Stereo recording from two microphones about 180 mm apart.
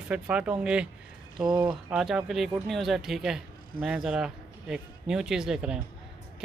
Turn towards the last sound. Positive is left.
turn(degrees=-5)  # may be behind; listen again after turning